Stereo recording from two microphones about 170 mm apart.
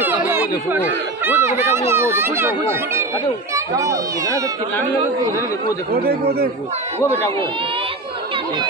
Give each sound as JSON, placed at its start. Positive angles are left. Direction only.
{"t": 0.0, "sound": "a sound", "side_deg": -10}
{"t": 1.2, "sound": "a child's voice", "side_deg": -15}
{"t": 5.9, "sound": "speech", "side_deg": -65}